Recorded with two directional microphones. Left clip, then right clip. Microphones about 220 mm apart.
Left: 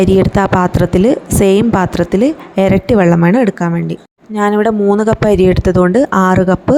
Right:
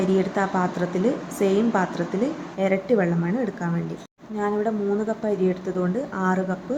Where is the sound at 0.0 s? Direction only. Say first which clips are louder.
Left 11 dB; 40° left (ahead or behind).